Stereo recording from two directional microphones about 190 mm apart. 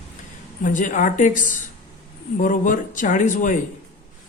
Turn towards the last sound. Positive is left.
turn(degrees=40)  # may be behind; listen again after turning